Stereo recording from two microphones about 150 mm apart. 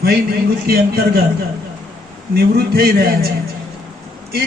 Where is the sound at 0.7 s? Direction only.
85° right.